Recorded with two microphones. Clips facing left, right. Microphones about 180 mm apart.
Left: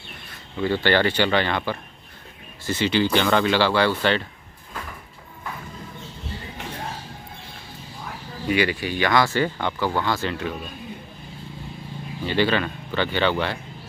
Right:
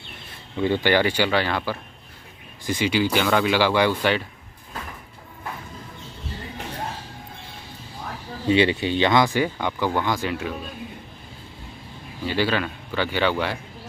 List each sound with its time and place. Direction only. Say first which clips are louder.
0.6 s speech: right 1 dB; 15° right (ahead or behind)
8.5 s speech: right 3 dB; 25° right (ahead or behind); by 10.5 s 10° right (ahead or behind)
12.3 s speech: left 2 dB; 5° right (ahead or behind)